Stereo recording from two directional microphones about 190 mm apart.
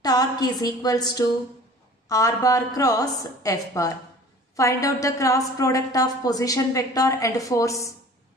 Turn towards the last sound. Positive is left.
turn(degrees=15)  # may be behind; listen again after turning